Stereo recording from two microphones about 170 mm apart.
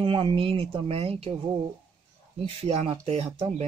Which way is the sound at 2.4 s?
35° right (ahead or behind).